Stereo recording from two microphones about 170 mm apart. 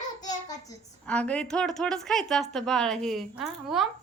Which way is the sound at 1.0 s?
10° left (ahead or behind).